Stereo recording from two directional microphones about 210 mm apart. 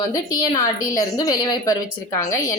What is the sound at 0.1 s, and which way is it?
A woman's voice, 20° left (ahead or behind).